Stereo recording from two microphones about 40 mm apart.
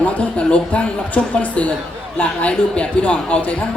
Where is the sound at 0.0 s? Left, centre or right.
Left.